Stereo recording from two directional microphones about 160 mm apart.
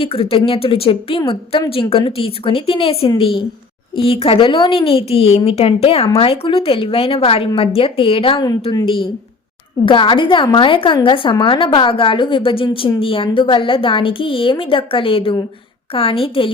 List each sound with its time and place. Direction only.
0.0 s a woman's voice: 35° left (ahead or behind)